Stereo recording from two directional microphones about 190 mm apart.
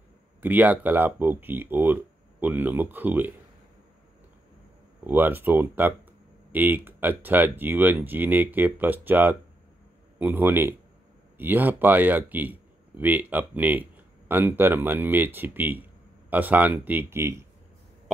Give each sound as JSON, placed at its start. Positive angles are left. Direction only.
{"t": 0.4, "sound": "speech", "side_deg": -10}
{"t": 5.0, "sound": "speech", "side_deg": -10}